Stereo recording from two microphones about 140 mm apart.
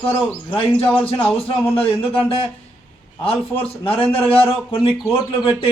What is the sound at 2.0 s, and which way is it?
Speech, 40° left (ahead or behind).